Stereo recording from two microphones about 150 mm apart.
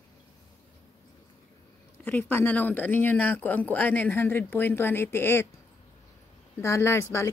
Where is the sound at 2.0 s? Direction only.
10° left (ahead or behind).